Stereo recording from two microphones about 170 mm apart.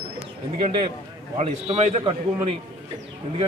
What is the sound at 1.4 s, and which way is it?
Speech, 35° right (ahead or behind).